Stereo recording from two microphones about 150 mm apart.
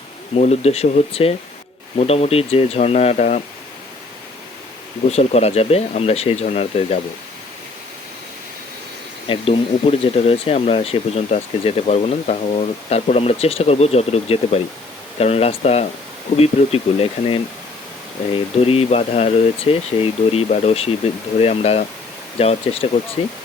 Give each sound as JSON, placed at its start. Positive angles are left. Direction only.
{"t": 0.3, "sound": "speech", "side_deg": 45}
{"t": 5.0, "sound": "speech", "side_deg": 45}
{"t": 9.2, "sound": "speech", "side_deg": 40}
{"t": 18.6, "sound": "speech", "side_deg": 40}